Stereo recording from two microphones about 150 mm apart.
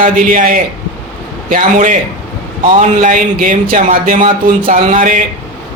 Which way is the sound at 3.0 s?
60° right (ahead or behind).